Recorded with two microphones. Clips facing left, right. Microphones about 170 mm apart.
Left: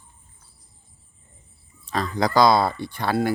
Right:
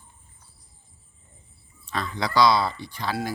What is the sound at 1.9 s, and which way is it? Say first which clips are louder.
Speech: left 4 dB; 40° left (ahead or behind).